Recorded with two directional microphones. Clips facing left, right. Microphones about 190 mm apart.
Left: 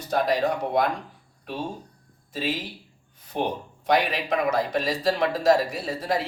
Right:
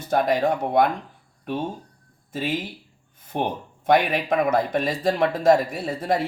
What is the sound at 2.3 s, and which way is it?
Speech, 50° right (ahead or behind).